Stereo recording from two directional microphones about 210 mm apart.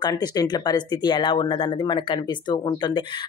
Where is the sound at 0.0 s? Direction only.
20° left (ahead or behind).